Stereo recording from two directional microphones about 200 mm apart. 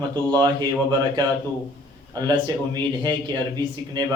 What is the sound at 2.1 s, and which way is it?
Speech, 20° right (ahead or behind).